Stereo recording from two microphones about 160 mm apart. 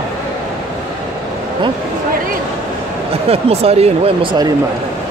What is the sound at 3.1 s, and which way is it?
Speech, 40° right (ahead or behind).